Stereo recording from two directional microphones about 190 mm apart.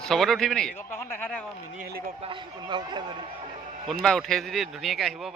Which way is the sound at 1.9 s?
50° right (ahead or behind).